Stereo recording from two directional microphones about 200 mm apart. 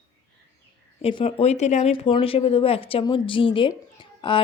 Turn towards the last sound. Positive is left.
turn(degrees=25)  # may be behind; listen again after turning